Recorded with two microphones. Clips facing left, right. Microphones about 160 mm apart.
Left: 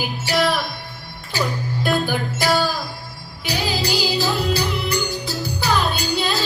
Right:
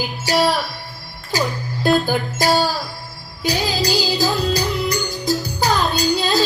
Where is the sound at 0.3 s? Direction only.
40° right (ahead or behind).